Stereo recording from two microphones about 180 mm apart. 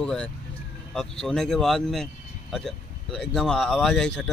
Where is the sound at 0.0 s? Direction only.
5° left (ahead or behind).